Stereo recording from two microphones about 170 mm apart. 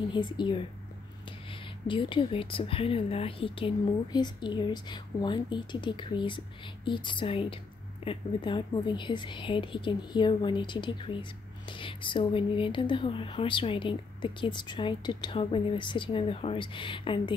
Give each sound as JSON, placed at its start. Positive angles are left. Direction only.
{"t": 0.1, "sound": "a woman's voice", "side_deg": 25}
{"t": 1.9, "sound": "a woman's voice", "side_deg": 30}